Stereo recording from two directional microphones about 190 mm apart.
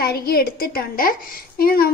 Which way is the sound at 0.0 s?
55° left (ahead or behind).